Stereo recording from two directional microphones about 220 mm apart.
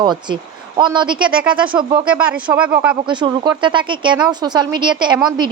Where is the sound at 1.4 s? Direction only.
5° right (ahead or behind).